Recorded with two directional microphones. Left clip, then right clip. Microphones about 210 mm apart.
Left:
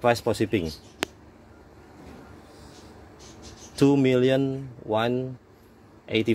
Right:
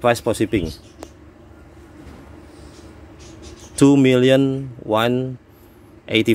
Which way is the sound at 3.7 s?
15° right (ahead or behind).